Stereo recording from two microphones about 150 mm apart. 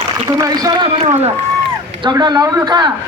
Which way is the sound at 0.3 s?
25° right (ahead or behind).